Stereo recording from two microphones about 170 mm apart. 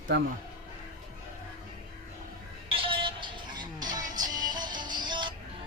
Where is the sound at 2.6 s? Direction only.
30° right (ahead or behind).